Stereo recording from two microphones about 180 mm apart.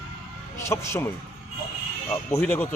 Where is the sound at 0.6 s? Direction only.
15° left (ahead or behind).